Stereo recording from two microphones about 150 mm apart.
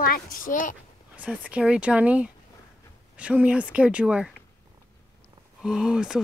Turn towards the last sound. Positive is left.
turn(degrees=-5)  # may be behind; listen again after turning